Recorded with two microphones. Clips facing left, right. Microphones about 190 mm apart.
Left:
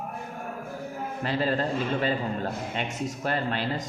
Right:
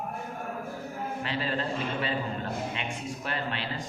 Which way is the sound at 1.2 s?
40° left (ahead or behind).